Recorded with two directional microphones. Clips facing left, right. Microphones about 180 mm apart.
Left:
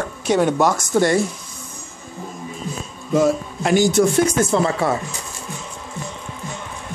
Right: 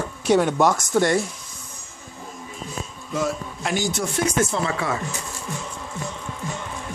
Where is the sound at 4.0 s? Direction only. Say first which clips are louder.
Left 12 dB; 65° left (ahead or behind).